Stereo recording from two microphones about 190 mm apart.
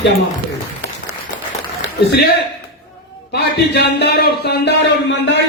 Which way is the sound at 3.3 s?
60° left (ahead or behind).